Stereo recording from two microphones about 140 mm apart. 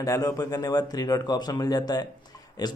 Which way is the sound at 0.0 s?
25° left (ahead or behind).